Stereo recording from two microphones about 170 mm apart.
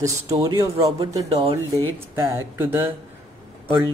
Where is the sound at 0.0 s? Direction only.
20° right (ahead or behind).